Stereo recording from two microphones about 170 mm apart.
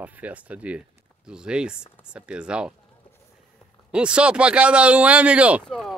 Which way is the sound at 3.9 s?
5° right (ahead or behind).